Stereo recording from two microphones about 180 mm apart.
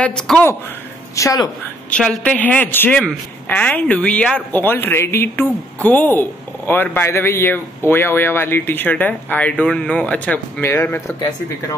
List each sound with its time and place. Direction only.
0.0 s a woman's voice: 5° left (ahead or behind)
1.1 s a woman's voice: 20° left (ahead or behind)
1.9 s speech: 5° left (ahead or behind)